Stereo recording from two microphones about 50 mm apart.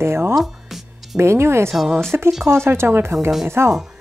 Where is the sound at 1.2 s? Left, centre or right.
Right.